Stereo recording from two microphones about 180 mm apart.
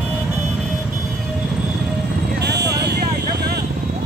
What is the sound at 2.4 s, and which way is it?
Vehicle, 70° right (ahead or behind).